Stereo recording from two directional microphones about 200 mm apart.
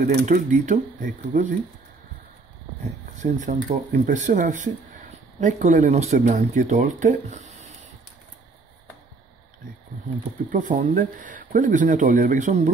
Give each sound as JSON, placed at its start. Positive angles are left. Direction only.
{"t": 0.0, "sound": "speech", "side_deg": -40}
{"t": 3.2, "sound": "speech", "side_deg": -35}
{"t": 10.5, "sound": "speech", "side_deg": -40}